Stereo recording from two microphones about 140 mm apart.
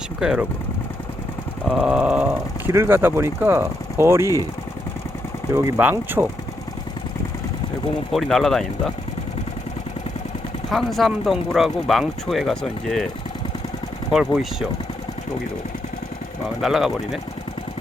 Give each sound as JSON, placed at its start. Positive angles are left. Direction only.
{"t": 0.2, "sound": "speech", "side_deg": -5}
{"t": 1.6, "sound": "a sound", "side_deg": -5}
{"t": 2.7, "sound": "speech", "side_deg": -15}
{"t": 5.5, "sound": "speech", "side_deg": -25}
{"t": 8.1, "sound": "speech", "side_deg": 0}
{"t": 10.7, "sound": "speech", "side_deg": 0}
{"t": 14.1, "sound": "speech", "side_deg": -5}
{"t": 16.6, "sound": "speech", "side_deg": 0}